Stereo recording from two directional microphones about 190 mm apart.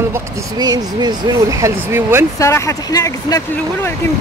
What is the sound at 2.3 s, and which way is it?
Speech, 15° left (ahead or behind).